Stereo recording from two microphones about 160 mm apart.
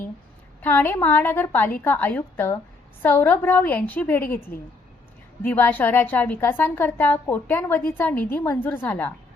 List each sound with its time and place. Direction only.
0.6 s a woman's voice: 10° left (ahead or behind)
4.4 s a woman's voice: 65° left (ahead or behind)
5.4 s a woman's voice: 10° left (ahead or behind)